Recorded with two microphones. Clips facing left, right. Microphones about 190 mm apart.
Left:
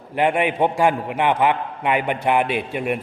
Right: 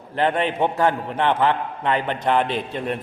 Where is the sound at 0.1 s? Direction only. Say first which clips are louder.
Left 2 dB; 10° left (ahead or behind).